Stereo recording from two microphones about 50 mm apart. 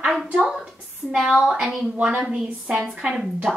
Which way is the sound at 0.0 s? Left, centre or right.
Centre.